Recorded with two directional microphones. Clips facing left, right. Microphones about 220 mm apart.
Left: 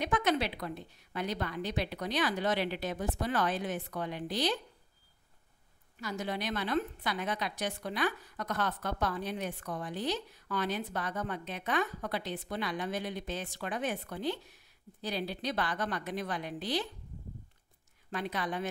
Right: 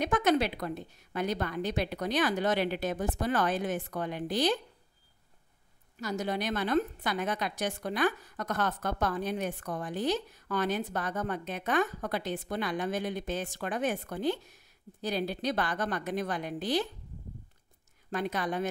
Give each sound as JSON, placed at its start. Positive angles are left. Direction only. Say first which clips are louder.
{"t": 0.0, "sound": "a woman's voice", "louder": "right 4 dB", "side_deg": -45}
{"t": 5.9, "sound": "a woman's voice", "louder": "right 4 dB", "side_deg": -40}
{"t": 18.1, "sound": "a woman's voice", "louder": "right 4 dB", "side_deg": -45}